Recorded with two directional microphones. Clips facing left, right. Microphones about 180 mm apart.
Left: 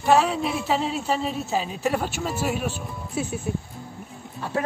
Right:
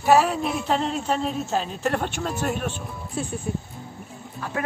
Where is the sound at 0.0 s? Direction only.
5° right (ahead or behind).